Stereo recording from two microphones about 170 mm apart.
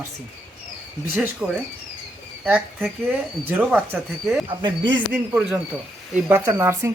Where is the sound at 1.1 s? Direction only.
10° right (ahead or behind).